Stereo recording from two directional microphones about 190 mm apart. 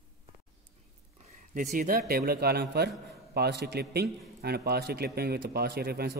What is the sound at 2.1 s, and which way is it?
A man's voice, 55° right (ahead or behind).